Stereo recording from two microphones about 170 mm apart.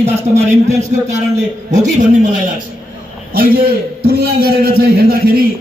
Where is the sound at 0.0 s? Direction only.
40° right (ahead or behind).